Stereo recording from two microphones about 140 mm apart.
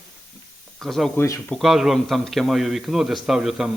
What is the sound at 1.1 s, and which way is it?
Speech, 20° left (ahead or behind).